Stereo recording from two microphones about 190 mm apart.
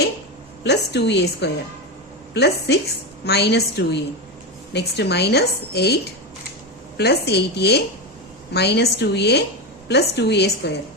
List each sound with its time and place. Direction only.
0.6 s a woman's voice: 60° left (ahead or behind)